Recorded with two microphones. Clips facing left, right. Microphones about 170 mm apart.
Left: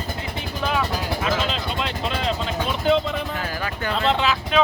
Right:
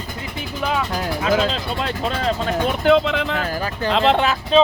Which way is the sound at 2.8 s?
80° right.